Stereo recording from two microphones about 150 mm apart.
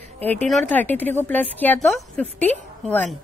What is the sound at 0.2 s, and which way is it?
A woman's voice, 10° left (ahead or behind).